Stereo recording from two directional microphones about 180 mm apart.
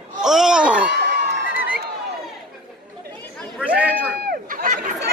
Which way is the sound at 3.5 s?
5° right (ahead or behind).